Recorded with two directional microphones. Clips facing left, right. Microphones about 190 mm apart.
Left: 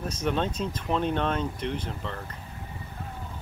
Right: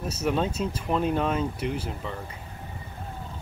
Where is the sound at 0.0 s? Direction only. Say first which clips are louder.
Right 2 dB; 5° right (ahead or behind).